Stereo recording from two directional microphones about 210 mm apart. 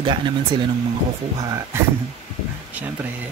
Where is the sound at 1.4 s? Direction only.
15° right (ahead or behind).